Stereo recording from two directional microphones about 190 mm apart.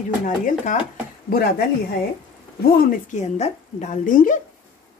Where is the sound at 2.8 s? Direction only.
45° left (ahead or behind).